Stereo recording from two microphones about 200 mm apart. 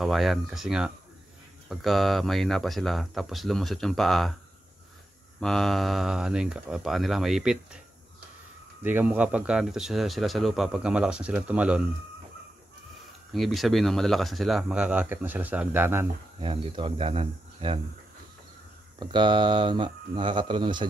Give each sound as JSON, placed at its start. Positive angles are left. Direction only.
{"t": 0.0, "sound": "speech", "side_deg": 0}
{"t": 5.4, "sound": "speech", "side_deg": 0}
{"t": 8.8, "sound": "speech", "side_deg": -10}
{"t": 13.3, "sound": "speech", "side_deg": 0}
{"t": 16.3, "sound": "speech", "side_deg": -25}
{"t": 18.9, "sound": "speech", "side_deg": -25}